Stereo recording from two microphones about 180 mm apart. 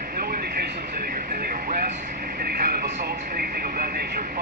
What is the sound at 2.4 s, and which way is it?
Speech, 60° right (ahead or behind).